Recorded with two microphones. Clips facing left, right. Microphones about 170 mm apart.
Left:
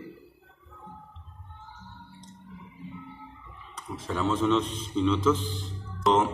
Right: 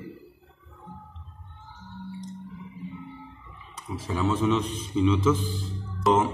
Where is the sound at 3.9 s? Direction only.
5° right (ahead or behind).